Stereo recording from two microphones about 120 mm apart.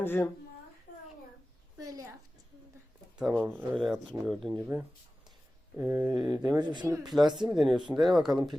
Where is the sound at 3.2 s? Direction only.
15° right (ahead or behind).